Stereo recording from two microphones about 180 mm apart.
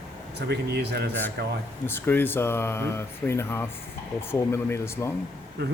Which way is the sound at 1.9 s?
10° left (ahead or behind).